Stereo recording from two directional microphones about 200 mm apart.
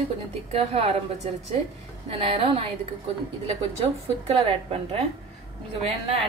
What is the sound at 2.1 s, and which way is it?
Speech, 30° right (ahead or behind).